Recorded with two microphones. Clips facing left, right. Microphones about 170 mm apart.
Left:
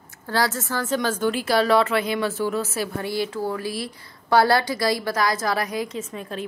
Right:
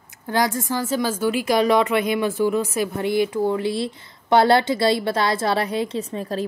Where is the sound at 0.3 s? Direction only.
15° right (ahead or behind).